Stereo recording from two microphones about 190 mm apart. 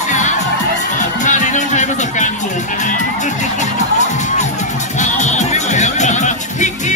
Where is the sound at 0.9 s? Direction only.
40° left (ahead or behind).